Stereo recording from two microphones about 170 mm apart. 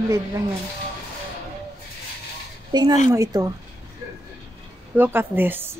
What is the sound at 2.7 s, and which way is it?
Speech, 25° right (ahead or behind).